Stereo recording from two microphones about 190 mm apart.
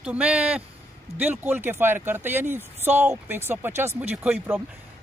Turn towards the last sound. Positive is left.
turn(degrees=-10)  # may be behind; listen again after turning